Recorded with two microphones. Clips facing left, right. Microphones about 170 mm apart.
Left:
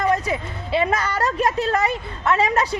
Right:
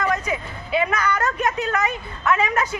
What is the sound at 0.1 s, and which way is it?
A woman's voice, 30° left (ahead or behind).